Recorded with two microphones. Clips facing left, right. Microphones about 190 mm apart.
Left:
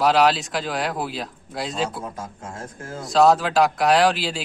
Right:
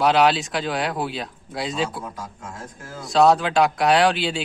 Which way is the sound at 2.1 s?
50° left (ahead or behind).